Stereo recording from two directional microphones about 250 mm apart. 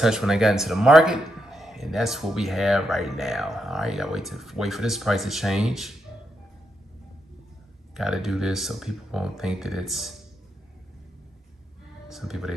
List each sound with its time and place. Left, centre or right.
0.0 s speech: centre
7.9 s speech: centre
12.1 s speech: centre